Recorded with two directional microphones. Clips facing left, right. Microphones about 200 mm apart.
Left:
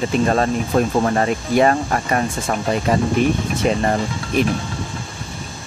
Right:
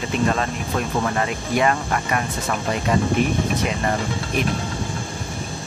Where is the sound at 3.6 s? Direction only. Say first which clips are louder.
Left 7 dB; 35° left (ahead or behind).